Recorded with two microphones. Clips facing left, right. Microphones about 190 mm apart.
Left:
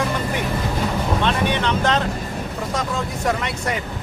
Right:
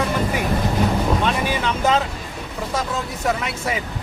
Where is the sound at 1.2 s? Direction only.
5° right (ahead or behind).